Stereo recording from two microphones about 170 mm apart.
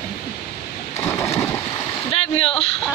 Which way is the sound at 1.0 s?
15° left (ahead or behind).